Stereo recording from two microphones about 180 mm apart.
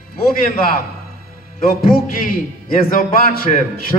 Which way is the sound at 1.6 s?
50° left (ahead or behind).